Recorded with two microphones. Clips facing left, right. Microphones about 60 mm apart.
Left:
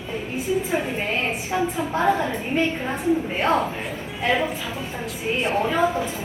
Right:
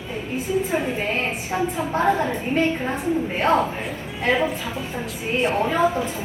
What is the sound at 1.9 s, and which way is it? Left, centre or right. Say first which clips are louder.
A man's voice: right 1 dB; right.